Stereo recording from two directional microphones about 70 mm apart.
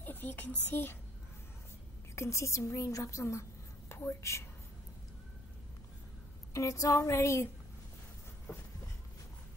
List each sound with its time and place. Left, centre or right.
0.0 s speech: left
2.1 s a woman's voice: left
6.5 s a woman's voice: left